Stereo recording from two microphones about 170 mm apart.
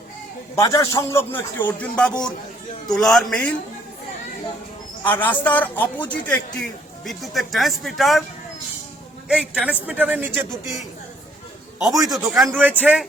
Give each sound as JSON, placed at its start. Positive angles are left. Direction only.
{"t": 0.5, "sound": "a man's voice", "side_deg": 20}
{"t": 5.0, "sound": "a man's voice", "side_deg": 10}
{"t": 9.3, "sound": "speech", "side_deg": -5}
{"t": 11.9, "sound": "a man's voice", "side_deg": -20}
{"t": 12.2, "sound": "a man's voice", "side_deg": -10}